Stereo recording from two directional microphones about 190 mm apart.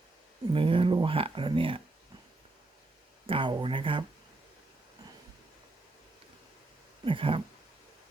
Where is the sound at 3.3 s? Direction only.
25° right (ahead or behind).